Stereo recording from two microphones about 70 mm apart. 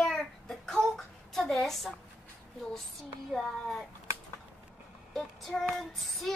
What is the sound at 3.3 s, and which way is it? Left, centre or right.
Speech, centre.